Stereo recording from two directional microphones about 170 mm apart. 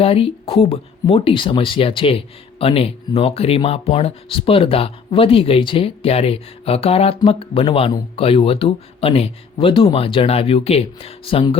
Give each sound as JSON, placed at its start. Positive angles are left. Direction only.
{"t": 0.0, "sound": "speech", "side_deg": 35}